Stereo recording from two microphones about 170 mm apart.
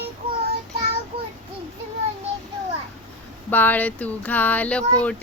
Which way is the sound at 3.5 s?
10° left (ahead or behind).